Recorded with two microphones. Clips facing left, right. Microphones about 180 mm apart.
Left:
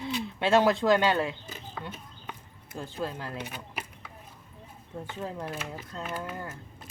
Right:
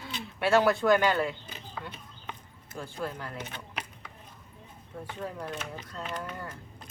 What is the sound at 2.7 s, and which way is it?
Speech, 25° left (ahead or behind).